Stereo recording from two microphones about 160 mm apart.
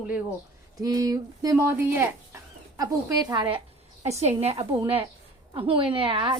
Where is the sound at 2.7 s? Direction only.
25° right (ahead or behind).